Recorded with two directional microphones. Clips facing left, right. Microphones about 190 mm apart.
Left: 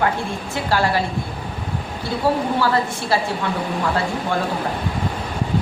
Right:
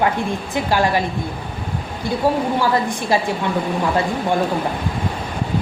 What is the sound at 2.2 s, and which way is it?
A woman's voice, 15° right (ahead or behind).